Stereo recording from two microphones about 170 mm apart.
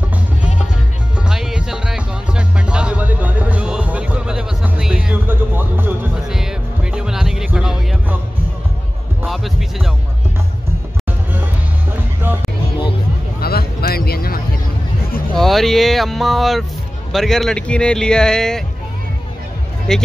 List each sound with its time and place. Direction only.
1.1 s music: 5° right (ahead or behind)
9.3 s music: centre (ahead or behind)
12.3 s music: 10° right (ahead or behind)
13.4 s a sound: 65° left (ahead or behind)
15.3 s a sound: centre (ahead or behind)
17.1 s speech: centre (ahead or behind)
19.9 s speech: 5° left (ahead or behind)